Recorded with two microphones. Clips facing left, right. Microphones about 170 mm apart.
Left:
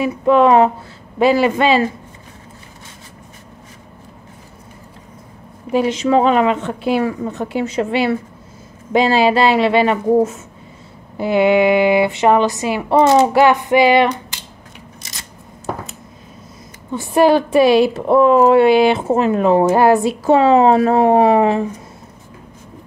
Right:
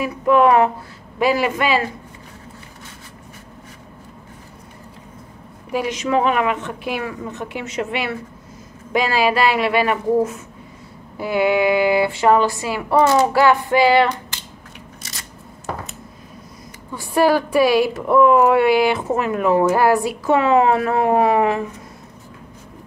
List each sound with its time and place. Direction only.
0.0 s a woman's voice: 25° left (ahead or behind)
5.7 s a woman's voice: 25° left (ahead or behind)
16.9 s a woman's voice: 25° left (ahead or behind)